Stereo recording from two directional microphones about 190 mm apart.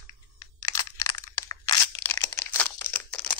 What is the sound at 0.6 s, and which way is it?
Crunch, 20° left (ahead or behind).